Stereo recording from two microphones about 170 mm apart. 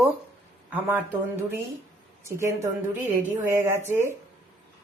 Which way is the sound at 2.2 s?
15° right (ahead or behind).